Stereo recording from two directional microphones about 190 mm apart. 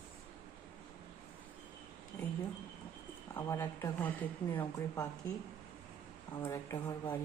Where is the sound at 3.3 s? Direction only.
15° left (ahead or behind).